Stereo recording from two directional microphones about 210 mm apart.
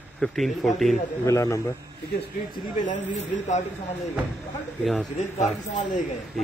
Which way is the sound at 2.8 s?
35° left (ahead or behind).